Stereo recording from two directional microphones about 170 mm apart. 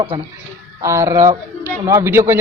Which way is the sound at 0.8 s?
15° right (ahead or behind).